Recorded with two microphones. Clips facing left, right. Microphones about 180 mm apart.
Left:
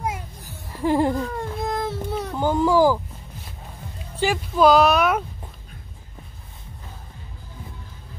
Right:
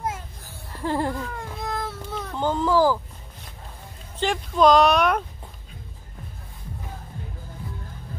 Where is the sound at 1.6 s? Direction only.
20° left (ahead or behind).